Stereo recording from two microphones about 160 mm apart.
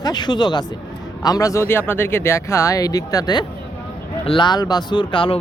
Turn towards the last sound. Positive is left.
turn(degrees=35)  # may be behind; listen again after turning